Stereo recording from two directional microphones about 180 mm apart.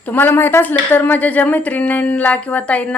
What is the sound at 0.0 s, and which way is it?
A woman's voice, 10° left (ahead or behind).